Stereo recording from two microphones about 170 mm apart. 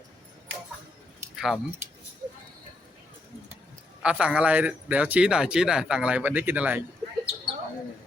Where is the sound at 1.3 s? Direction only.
Centre (ahead or behind).